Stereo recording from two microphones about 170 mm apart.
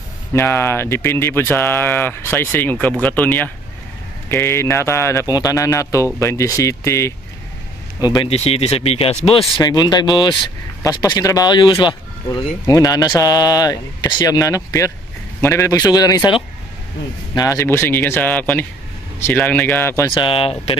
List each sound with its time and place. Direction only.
0.3 s speech: 15° left (ahead or behind)
8.0 s speech: 25° left (ahead or behind)
9.6 s speech: 25° left (ahead or behind)
20.1 s speech: 30° left (ahead or behind)